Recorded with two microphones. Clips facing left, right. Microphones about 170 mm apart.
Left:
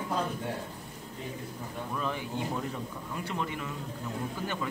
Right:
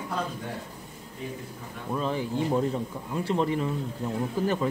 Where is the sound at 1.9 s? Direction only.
30° right (ahead or behind).